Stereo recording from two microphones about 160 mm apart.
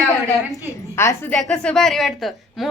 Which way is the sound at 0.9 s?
15° left (ahead or behind).